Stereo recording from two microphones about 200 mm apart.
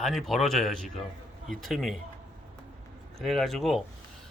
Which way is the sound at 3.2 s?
Centre (ahead or behind).